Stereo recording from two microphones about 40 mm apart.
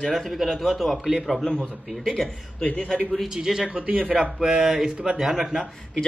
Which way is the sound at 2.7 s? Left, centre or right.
Left.